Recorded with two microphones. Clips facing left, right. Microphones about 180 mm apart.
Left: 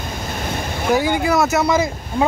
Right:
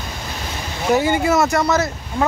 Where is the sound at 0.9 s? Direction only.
Centre (ahead or behind).